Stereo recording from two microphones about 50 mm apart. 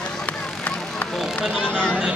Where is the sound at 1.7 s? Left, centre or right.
Left.